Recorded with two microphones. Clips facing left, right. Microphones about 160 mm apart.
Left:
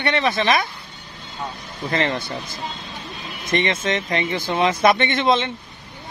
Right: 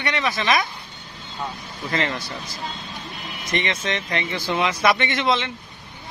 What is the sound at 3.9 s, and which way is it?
Speech, 25° left (ahead or behind).